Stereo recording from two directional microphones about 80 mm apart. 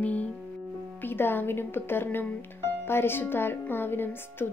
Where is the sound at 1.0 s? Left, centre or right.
Left.